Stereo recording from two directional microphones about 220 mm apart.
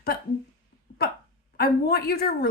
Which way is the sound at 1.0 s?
45° left (ahead or behind).